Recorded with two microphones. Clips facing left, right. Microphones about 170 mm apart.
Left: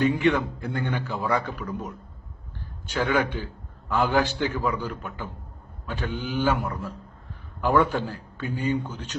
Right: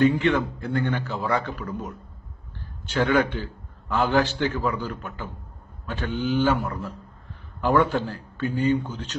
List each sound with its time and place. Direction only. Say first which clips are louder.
0.0 s a man's voice: right 2 dB; 10° left (ahead or behind)
2.9 s a man's voice: right 3 dB; 10° left (ahead or behind)